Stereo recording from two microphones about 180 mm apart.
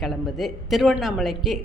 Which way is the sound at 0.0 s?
Centre (ahead or behind).